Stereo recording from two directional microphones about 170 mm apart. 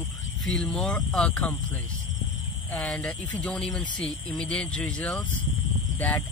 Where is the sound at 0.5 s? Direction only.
5° left (ahead or behind).